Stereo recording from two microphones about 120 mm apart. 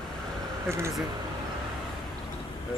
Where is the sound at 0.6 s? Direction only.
20° right (ahead or behind).